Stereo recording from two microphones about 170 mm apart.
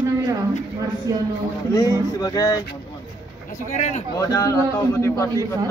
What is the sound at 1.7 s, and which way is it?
Speech, 20° left (ahead or behind).